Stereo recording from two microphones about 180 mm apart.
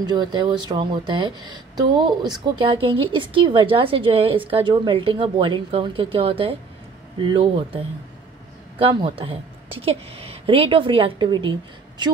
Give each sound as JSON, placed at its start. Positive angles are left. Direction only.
{"t": 0.0, "sound": "speech", "side_deg": -25}